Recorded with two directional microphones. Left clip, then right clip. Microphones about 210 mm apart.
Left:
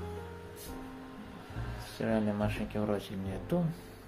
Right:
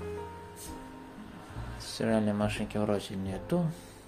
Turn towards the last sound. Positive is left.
turn(degrees=-20)  # may be behind; listen again after turning